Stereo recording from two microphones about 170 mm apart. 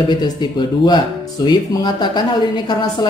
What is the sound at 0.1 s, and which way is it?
Speech, 25° left (ahead or behind).